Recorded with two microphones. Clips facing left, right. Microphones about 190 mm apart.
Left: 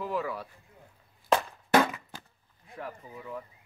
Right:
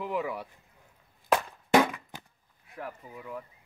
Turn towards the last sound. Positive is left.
turn(degrees=-5)  # may be behind; listen again after turning